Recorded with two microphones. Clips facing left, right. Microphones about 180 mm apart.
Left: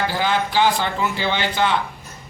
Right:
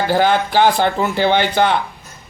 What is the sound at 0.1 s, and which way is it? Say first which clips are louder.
Speech: right 6 dB; 55° right (ahead or behind).